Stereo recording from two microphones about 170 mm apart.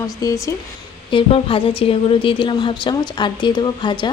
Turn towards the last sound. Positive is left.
turn(degrees=25)  # may be behind; listen again after turning